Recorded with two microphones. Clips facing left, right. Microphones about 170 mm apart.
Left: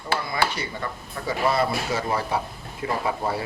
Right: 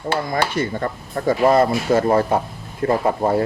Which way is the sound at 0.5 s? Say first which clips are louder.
Right 9 dB; 50° right (ahead or behind).